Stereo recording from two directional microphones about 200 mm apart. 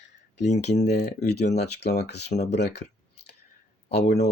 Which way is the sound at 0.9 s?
50° left (ahead or behind).